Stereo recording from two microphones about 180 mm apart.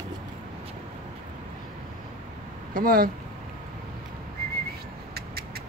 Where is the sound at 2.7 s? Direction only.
50° right (ahead or behind).